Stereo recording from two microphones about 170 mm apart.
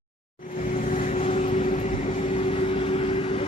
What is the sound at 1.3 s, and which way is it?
Vehicle, 45° left (ahead or behind).